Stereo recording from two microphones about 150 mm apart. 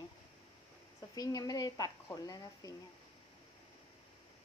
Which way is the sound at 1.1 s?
25° left (ahead or behind).